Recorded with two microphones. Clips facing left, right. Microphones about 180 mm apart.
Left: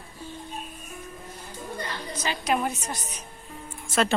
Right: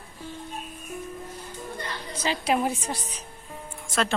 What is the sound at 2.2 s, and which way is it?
Speech, 30° right (ahead or behind).